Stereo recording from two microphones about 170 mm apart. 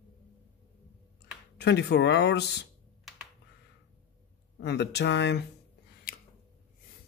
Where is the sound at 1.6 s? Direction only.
85° left.